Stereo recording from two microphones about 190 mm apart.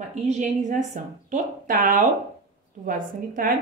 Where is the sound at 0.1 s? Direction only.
40° right (ahead or behind).